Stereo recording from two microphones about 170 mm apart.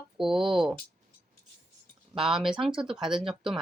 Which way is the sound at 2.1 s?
Centre (ahead or behind).